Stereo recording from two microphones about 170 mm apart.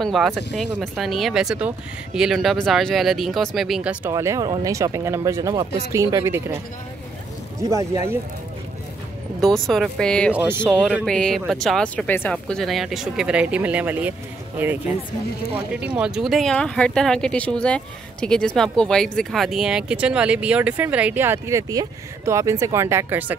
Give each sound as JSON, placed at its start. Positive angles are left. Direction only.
{"t": 0.0, "sound": "speech", "side_deg": 0}
{"t": 4.1, "sound": "speech", "side_deg": -20}
{"t": 7.7, "sound": "speech", "side_deg": -15}
{"t": 9.4, "sound": "speech", "side_deg": 0}
{"t": 10.3, "sound": "speech", "side_deg": -10}
{"t": 10.6, "sound": "speech", "side_deg": 5}
{"t": 15.7, "sound": "speech", "side_deg": -5}